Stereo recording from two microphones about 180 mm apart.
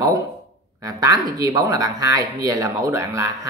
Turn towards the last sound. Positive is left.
turn(degrees=-15)  # may be behind; listen again after turning